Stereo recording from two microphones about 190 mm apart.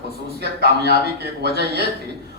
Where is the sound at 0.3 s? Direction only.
60° right (ahead or behind).